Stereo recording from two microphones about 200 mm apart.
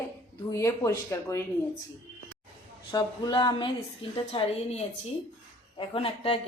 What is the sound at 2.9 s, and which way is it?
Speech, 20° left (ahead or behind).